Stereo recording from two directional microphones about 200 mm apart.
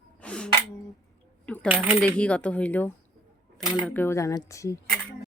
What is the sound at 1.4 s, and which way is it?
Coin, 5° left (ahead or behind).